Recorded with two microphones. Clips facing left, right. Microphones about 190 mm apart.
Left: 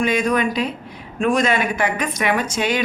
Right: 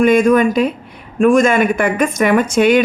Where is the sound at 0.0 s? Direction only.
50° right (ahead or behind).